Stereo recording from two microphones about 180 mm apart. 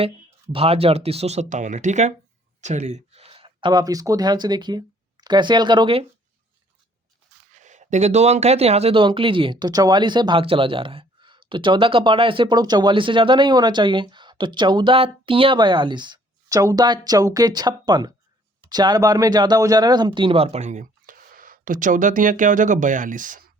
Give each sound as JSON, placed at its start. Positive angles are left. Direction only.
{"t": 0.5, "sound": "speech", "side_deg": -35}
{"t": 7.5, "sound": "speech", "side_deg": -45}